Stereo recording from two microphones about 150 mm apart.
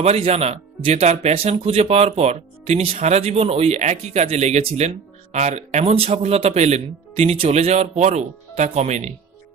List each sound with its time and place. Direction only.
0.0 s speech: 45° right (ahead or behind)